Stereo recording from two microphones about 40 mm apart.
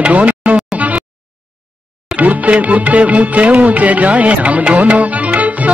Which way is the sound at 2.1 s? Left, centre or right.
Right.